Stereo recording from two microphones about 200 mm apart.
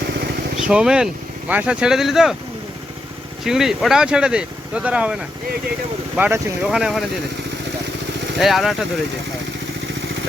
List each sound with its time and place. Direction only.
0.6 s speech: 5° right (ahead or behind)
3.4 s speech: centre (ahead or behind)
6.1 s speech: 10° right (ahead or behind)
8.4 s speech: centre (ahead or behind)